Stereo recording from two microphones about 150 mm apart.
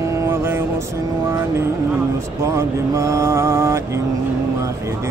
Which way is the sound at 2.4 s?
20° right (ahead or behind).